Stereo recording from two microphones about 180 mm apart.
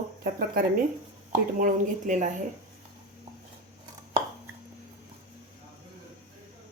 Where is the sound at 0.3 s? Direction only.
55° right (ahead or behind).